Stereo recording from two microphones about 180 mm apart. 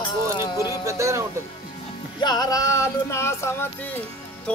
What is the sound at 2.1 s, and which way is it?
Music, 25° left (ahead or behind).